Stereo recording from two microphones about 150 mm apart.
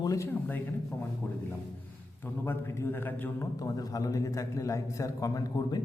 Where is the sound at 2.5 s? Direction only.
15° left (ahead or behind).